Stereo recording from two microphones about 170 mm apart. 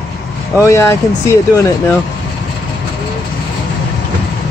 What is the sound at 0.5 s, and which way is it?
Speech, 15° left (ahead or behind).